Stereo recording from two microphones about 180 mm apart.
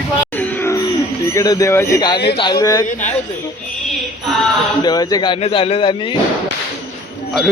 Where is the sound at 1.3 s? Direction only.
20° left (ahead or behind).